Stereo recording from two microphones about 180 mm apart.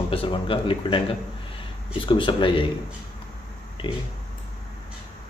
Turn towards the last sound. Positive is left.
turn(degrees=30)  # may be behind; listen again after turning